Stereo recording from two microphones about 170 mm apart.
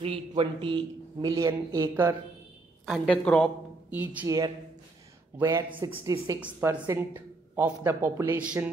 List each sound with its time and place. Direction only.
0.0 s a man's voice: 30° right (ahead or behind)
2.8 s a woman's voice: 5° left (ahead or behind)
3.9 s a man's voice: 10° right (ahead or behind)
5.4 s a man's voice: 15° right (ahead or behind)